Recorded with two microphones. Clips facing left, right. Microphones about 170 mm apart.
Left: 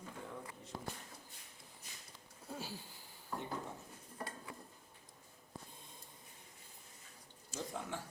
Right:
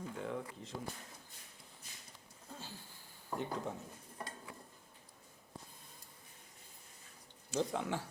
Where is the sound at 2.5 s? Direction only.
10° left (ahead or behind).